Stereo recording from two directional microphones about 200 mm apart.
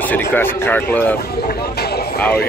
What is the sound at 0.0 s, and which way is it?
Speech, 10° left (ahead or behind).